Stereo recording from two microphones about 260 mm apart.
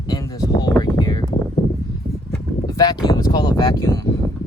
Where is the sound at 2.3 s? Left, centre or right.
Centre.